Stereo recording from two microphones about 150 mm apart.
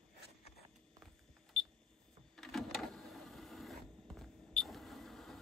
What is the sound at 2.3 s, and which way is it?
Printer, centre (ahead or behind).